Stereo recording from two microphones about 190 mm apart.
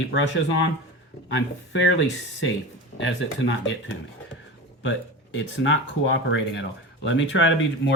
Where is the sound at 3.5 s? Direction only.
75° left (ahead or behind).